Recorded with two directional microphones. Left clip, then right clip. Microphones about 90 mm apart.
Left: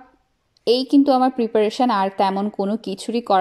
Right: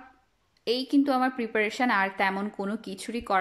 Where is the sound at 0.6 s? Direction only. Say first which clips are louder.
Left 9 dB; 35° left (ahead or behind).